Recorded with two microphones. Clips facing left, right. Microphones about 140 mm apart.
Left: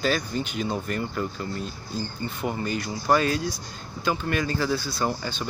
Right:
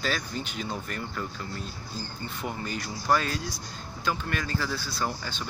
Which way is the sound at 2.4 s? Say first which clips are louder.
Left 6 dB; 5° left (ahead or behind).